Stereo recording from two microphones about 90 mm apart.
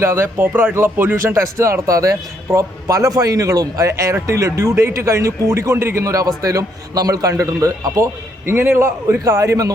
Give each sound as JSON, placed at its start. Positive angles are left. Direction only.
{"t": 0.0, "sound": "speech", "side_deg": -30}